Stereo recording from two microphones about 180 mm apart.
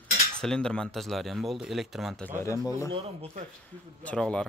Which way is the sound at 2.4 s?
20° left (ahead or behind).